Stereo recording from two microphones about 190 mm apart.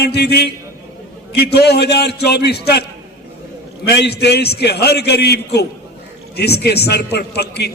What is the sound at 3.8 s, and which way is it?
A man's voice, 60° left (ahead or behind).